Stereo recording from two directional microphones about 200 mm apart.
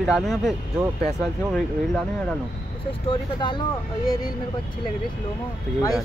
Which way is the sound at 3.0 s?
20° left (ahead or behind).